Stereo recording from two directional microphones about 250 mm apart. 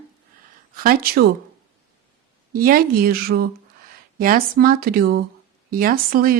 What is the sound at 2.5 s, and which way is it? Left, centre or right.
Speech, right.